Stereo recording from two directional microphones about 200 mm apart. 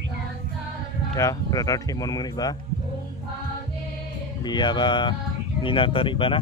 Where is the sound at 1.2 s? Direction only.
15° left (ahead or behind).